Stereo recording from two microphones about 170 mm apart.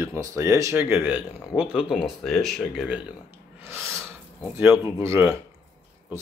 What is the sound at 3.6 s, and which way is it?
Gasp, 15° right (ahead or behind).